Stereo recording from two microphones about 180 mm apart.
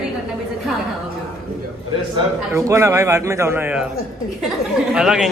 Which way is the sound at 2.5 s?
15° right (ahead or behind).